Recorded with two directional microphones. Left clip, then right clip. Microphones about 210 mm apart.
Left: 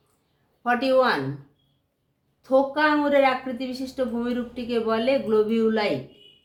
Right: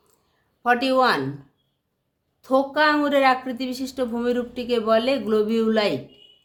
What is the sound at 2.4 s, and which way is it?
Speech, 55° right (ahead or behind).